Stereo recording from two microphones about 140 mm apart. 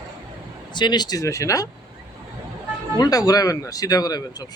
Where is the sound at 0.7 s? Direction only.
30° left (ahead or behind).